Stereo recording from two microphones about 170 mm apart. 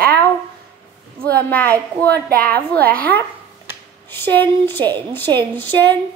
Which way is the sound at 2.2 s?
65° right (ahead or behind).